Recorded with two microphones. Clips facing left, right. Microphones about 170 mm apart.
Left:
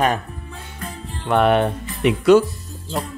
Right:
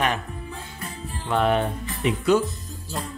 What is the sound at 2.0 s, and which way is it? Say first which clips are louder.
Speech: left 7 dB; 80° left.